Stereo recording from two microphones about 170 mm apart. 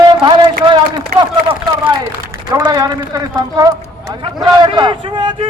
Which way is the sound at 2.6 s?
20° right (ahead or behind).